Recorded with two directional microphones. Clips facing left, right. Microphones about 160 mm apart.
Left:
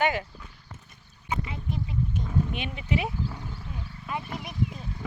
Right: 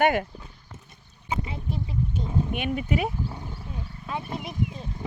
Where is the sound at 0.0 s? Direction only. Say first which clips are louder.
Right 4 dB; 55° right (ahead or behind).